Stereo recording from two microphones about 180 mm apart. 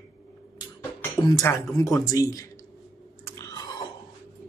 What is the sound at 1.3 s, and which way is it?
Speech, 15° left (ahead or behind).